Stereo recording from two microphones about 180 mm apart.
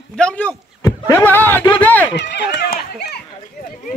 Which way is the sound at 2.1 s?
75° left (ahead or behind).